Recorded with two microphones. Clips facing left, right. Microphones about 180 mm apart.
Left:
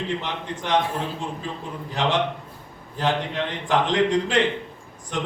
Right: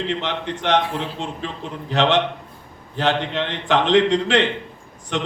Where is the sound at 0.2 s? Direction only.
80° right.